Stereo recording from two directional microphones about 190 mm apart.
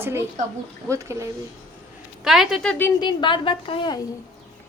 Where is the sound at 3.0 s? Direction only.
25° left (ahead or behind).